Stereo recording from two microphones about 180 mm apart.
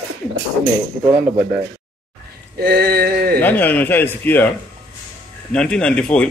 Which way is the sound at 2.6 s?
60° right (ahead or behind).